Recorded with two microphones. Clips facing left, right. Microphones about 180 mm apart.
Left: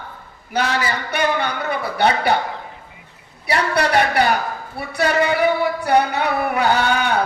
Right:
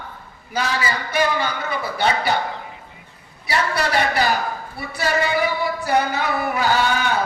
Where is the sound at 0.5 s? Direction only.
65° left (ahead or behind).